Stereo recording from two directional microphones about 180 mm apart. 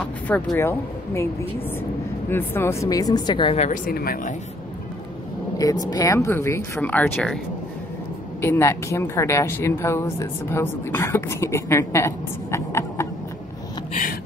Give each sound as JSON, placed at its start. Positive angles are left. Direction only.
{"t": 0.0, "sound": "speech", "side_deg": 10}
{"t": 2.2, "sound": "speech", "side_deg": 10}
{"t": 3.5, "sound": "speech", "side_deg": 40}
{"t": 3.8, "sound": "speech", "side_deg": 55}
{"t": 5.6, "sound": "a woman's voice", "side_deg": 20}
{"t": 8.4, "sound": "a woman's voice", "side_deg": 15}